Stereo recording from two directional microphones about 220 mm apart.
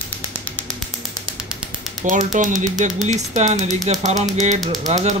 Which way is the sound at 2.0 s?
35° right (ahead or behind).